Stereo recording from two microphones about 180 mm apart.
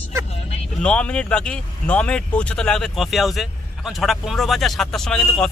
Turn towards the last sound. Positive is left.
turn(degrees=5)  # may be behind; listen again after turning